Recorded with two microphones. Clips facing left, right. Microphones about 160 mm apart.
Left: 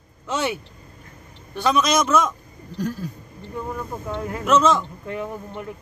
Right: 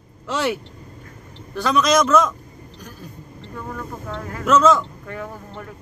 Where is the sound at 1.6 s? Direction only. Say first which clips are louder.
Right 2 dB; centre (ahead or behind).